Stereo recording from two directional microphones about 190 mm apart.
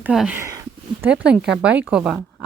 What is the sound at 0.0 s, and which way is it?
Speech, 5° right (ahead or behind).